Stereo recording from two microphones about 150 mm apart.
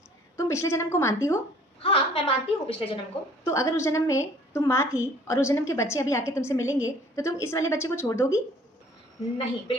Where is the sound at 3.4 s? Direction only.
20° left (ahead or behind).